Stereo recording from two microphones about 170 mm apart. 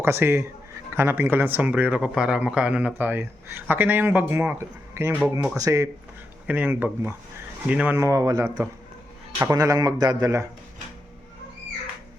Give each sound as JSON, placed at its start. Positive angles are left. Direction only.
{"t": 0.0, "sound": "a man's voice", "side_deg": -15}